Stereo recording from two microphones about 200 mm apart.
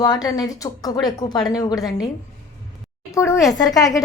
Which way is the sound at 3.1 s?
15° left (ahead or behind).